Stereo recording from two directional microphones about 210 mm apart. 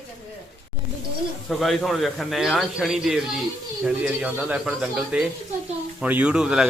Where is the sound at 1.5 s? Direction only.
Centre (ahead or behind).